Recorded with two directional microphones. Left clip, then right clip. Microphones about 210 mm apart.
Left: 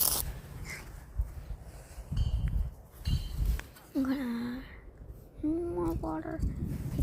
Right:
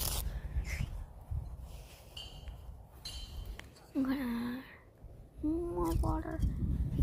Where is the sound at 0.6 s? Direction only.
5° right (ahead or behind).